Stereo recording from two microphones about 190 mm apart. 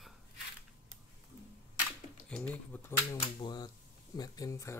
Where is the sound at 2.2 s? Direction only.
5° left (ahead or behind).